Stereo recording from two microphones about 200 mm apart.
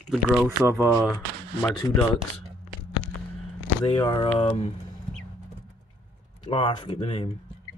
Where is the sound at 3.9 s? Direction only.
25° left (ahead or behind).